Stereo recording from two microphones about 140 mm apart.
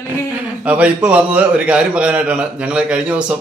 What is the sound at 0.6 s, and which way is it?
A man's voice, 10° right (ahead or behind).